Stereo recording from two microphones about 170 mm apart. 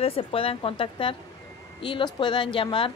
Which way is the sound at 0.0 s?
35° left (ahead or behind).